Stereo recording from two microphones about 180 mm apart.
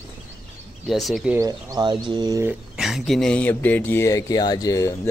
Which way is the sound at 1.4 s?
25° right (ahead or behind).